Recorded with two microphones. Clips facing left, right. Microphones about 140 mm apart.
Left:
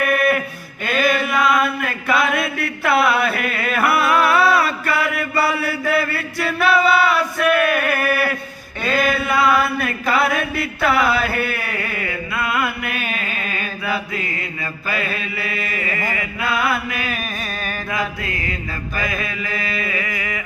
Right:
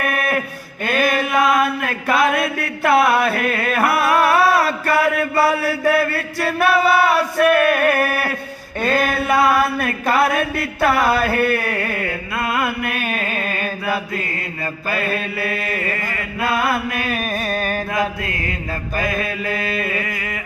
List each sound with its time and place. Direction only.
0.0 s a sound: 45° right (ahead or behind)
0.9 s chant: 45° right (ahead or behind)
14.8 s mantra: 45° right (ahead or behind)